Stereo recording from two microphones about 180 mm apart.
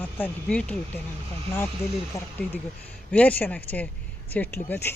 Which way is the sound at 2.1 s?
15° left (ahead or behind).